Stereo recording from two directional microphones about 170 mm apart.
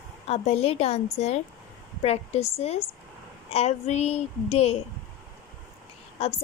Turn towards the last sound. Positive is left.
turn(degrees=35)  # may be behind; listen again after turning